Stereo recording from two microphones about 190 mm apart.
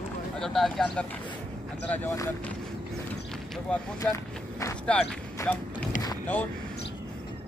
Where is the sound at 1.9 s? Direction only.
15° left (ahead or behind).